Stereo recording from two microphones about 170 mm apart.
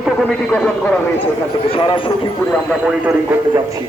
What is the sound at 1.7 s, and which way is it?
Speech, 30° left (ahead or behind).